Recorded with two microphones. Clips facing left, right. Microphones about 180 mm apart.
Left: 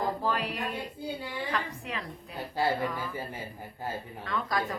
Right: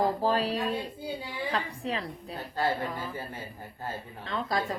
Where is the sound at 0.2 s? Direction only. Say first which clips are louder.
Right 4 dB; 30° right (ahead or behind).